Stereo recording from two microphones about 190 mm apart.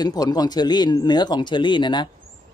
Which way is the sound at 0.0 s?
20° left (ahead or behind).